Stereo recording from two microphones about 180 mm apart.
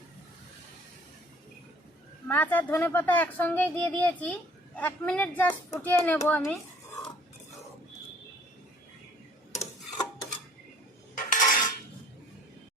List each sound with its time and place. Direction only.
2.2 s a woman's voice: 10° left (ahead or behind)
11.1 s cutlery: 45° left (ahead or behind)